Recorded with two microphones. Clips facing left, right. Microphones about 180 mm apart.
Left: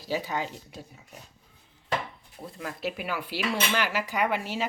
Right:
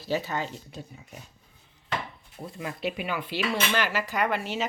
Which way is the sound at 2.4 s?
Centre (ahead or behind).